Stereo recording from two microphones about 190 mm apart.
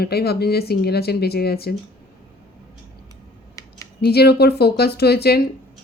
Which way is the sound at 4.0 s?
55° left (ahead or behind).